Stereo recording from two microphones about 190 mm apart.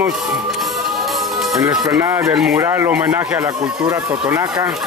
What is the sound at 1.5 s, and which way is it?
Speech, 15° right (ahead or behind).